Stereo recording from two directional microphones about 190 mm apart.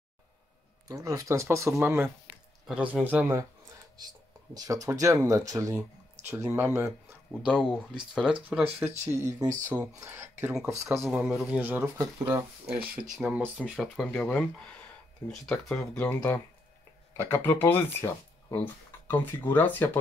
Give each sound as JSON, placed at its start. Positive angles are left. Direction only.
{"t": 0.8, "sound": "speech", "side_deg": -15}
{"t": 4.6, "sound": "speech", "side_deg": -20}
{"t": 15.4, "sound": "speech", "side_deg": 5}